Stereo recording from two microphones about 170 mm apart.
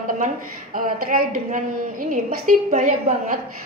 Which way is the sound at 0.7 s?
55° right (ahead or behind).